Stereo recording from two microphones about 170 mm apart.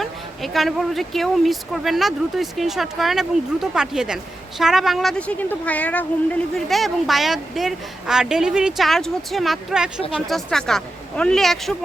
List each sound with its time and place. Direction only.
0.0 s speech: centre (ahead or behind)